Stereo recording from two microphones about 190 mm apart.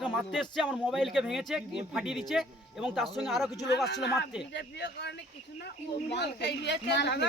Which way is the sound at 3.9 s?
60° left (ahead or behind).